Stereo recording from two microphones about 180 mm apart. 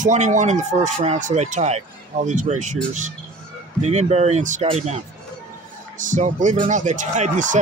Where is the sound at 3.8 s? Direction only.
35° right (ahead or behind).